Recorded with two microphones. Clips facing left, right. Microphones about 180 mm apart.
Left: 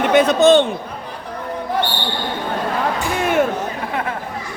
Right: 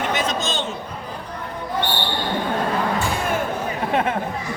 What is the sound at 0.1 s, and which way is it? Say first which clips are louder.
Speech: left 12 dB; 60° left (ahead or behind).